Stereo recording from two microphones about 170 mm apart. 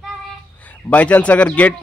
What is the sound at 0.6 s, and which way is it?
A man's voice, 10° left (ahead or behind).